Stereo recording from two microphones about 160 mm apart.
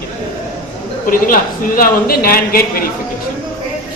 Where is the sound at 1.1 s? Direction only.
60° left (ahead or behind).